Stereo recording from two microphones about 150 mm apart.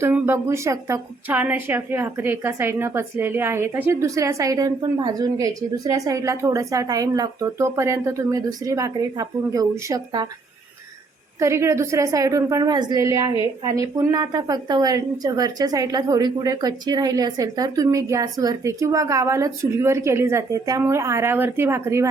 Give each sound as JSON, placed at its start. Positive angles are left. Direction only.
{"t": 0.0, "sound": "a woman's voice", "side_deg": -15}
{"t": 11.3, "sound": "a woman's voice", "side_deg": -20}